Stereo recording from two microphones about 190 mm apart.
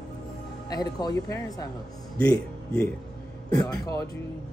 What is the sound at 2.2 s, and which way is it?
Speech, 5° left (ahead or behind).